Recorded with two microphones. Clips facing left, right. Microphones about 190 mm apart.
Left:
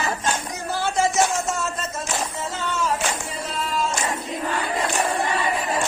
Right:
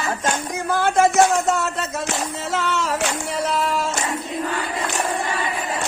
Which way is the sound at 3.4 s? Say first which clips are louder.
Right 3 dB; 75° right (ahead or behind).